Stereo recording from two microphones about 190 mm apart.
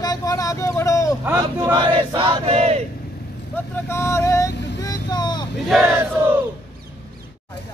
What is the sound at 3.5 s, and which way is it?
Speech, 15° left (ahead or behind).